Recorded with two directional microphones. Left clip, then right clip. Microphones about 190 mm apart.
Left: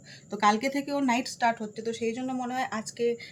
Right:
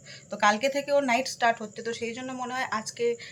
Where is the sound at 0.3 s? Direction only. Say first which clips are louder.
Right 1 dB; 10° left (ahead or behind).